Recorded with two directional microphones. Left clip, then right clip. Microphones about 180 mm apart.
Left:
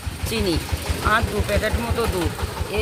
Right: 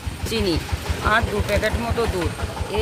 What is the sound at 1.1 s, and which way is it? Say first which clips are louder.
Speech: right 1 dB; centre (ahead or behind).